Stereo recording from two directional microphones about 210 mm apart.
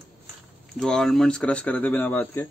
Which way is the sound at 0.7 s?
Centre (ahead or behind).